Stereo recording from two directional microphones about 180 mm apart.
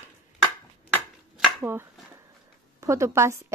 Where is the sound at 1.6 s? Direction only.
10° right (ahead or behind).